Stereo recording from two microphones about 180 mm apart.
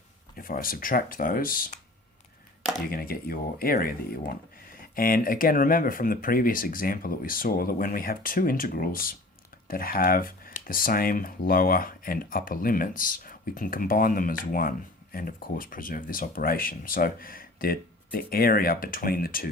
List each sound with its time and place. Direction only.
0.3 s speech: 55° left (ahead or behind)
2.9 s speech: 55° left (ahead or behind)